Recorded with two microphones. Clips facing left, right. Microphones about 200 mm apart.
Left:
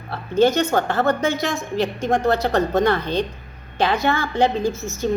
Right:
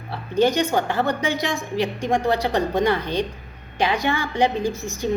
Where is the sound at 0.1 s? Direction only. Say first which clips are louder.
Left 2 dB; 15° right (ahead or behind).